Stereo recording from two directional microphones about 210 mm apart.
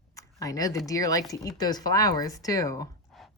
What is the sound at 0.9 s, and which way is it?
Speech, 15° left (ahead or behind).